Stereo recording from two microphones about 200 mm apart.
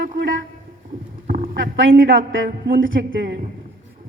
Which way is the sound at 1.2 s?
45° right (ahead or behind).